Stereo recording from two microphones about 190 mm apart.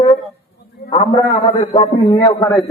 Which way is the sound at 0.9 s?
20° left (ahead or behind).